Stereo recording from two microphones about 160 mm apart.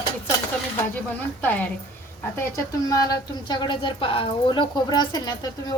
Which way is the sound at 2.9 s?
25° left (ahead or behind).